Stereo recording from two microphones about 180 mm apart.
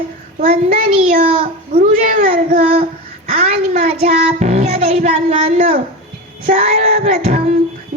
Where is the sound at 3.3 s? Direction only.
40° right (ahead or behind).